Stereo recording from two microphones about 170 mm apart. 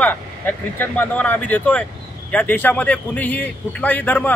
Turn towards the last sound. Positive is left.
turn(degrees=10)  # may be behind; listen again after turning